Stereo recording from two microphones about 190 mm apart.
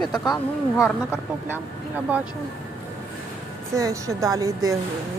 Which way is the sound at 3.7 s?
15° right (ahead or behind).